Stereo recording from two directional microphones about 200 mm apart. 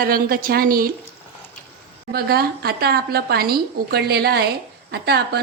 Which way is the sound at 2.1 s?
50° right (ahead or behind).